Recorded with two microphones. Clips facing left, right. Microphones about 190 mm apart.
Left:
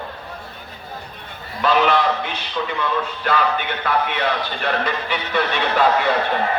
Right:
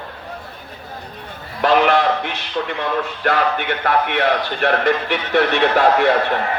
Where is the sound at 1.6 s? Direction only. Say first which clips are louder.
Right 3 dB; 65° right (ahead or behind).